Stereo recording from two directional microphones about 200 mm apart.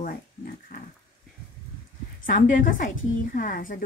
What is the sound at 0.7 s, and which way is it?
Dog, 50° left (ahead or behind).